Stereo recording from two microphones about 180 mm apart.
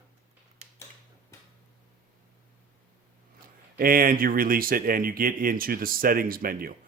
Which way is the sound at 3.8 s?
55° right (ahead or behind).